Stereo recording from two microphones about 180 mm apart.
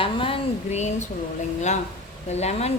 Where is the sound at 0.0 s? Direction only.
30° left (ahead or behind).